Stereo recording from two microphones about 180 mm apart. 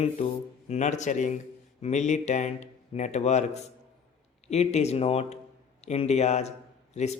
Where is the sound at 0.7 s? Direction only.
40° left (ahead or behind).